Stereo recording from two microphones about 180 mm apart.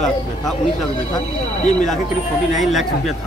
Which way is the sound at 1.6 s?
5° left (ahead or behind).